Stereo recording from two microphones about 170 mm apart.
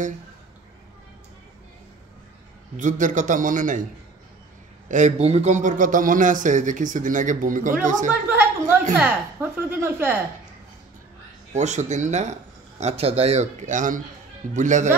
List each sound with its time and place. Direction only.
2.8 s a man's voice: 50° right (ahead or behind)
4.8 s a man's voice: 45° right (ahead or behind)
8.1 s a sound: 10° right (ahead or behind)
9.0 s speech: 10° right (ahead or behind)
11.5 s a man's voice: 45° right (ahead or behind)